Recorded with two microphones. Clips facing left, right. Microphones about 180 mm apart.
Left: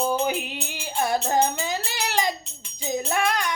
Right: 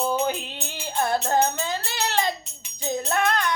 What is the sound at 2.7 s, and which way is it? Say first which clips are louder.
Music: even; 15° left (ahead or behind).